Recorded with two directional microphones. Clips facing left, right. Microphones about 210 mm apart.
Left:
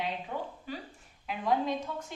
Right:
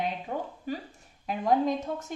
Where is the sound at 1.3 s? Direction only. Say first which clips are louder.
Right 4 dB; 45° right (ahead or behind).